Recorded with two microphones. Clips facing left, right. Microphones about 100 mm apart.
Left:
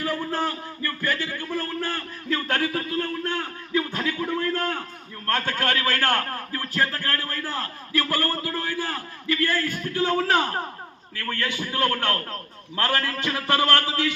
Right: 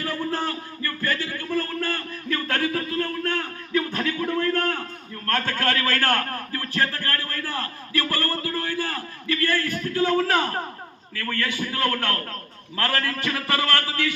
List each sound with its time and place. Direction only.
0.0 s a man's voice: 15° left (ahead or behind)